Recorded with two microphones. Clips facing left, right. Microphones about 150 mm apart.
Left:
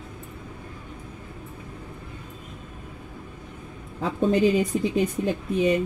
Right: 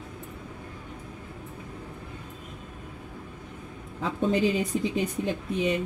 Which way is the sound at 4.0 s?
45° left (ahead or behind).